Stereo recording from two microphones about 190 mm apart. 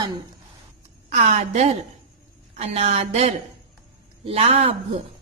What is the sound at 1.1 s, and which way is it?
A woman's voice, 40° right (ahead or behind).